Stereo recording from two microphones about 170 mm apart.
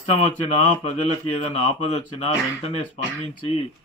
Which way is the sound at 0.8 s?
35° left (ahead or behind).